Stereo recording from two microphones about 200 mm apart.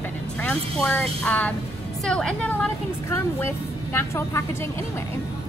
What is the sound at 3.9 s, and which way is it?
Speech, 10° left (ahead or behind).